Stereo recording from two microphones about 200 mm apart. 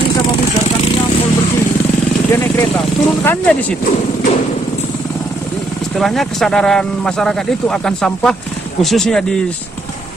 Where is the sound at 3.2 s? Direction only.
10° left (ahead or behind).